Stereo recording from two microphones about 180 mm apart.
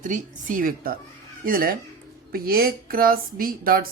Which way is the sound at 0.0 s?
45° right (ahead or behind).